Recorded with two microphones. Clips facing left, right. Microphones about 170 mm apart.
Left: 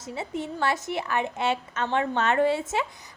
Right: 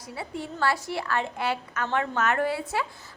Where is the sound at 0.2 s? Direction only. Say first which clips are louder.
Left 1 dB; 20° left (ahead or behind).